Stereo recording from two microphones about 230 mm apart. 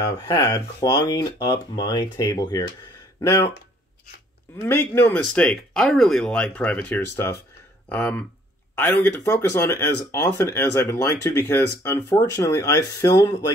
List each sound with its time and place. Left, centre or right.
0.3 s speech: centre
4.6 s speech: centre